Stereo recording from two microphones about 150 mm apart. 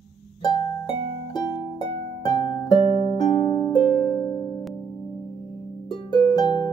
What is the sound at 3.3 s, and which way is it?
Music, 30° left (ahead or behind).